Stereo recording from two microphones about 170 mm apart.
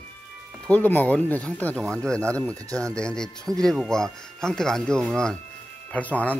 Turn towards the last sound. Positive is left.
turn(degrees=10)  # may be behind; listen again after turning